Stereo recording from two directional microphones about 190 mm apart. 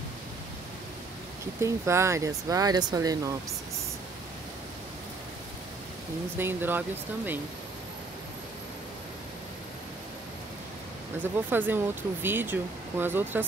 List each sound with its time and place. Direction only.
1.6 s speech: 15° right (ahead or behind)
6.3 s speech: 10° right (ahead or behind)
11.3 s speech: 10° right (ahead or behind)